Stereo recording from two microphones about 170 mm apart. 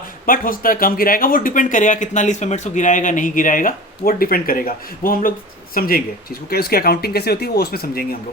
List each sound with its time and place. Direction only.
0.3 s speech: 55° left (ahead or behind)